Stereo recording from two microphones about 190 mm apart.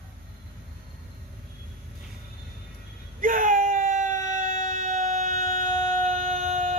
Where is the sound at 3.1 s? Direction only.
45° right (ahead or behind).